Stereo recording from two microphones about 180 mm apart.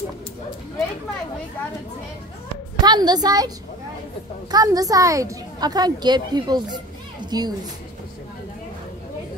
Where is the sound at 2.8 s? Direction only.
25° right (ahead or behind).